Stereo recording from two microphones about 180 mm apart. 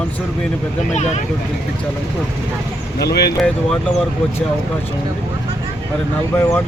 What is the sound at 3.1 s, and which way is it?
Speech, 65° left (ahead or behind).